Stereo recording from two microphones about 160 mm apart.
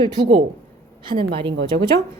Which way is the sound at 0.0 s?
25° right (ahead or behind).